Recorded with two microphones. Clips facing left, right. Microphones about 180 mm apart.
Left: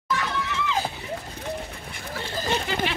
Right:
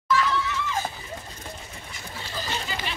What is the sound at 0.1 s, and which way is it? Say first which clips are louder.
Screaming: right 3 dB; 70° left (ahead or behind).